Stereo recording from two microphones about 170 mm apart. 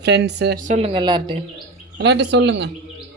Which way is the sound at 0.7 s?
35° right (ahead or behind).